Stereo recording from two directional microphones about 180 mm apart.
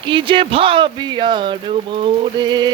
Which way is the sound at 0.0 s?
25° right (ahead or behind).